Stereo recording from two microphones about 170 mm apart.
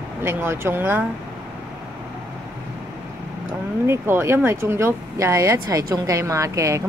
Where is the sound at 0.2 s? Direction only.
15° right (ahead or behind).